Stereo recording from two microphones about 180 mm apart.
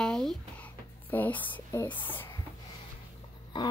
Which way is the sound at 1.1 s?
10° left (ahead or behind).